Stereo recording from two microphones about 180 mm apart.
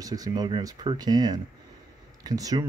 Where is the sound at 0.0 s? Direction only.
20° right (ahead or behind).